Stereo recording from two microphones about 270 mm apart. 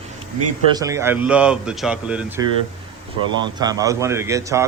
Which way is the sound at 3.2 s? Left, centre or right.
Centre.